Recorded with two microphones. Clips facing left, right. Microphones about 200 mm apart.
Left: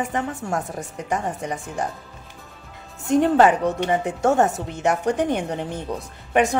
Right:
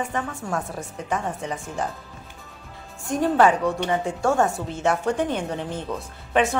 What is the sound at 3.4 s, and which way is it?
Speech, 20° left (ahead or behind).